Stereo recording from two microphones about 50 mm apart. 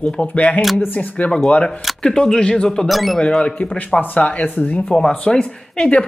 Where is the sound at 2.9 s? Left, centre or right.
Centre.